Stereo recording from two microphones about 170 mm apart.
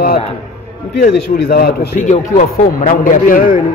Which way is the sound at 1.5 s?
55° left (ahead or behind).